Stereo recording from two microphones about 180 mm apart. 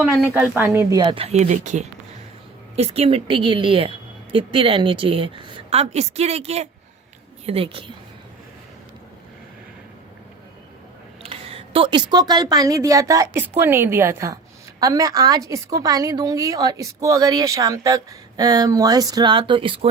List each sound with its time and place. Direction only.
0.0 s a woman's voice: 10° right (ahead or behind); by 7.9 s 30° right (ahead or behind)
11.2 s a woman's voice: 30° right (ahead or behind)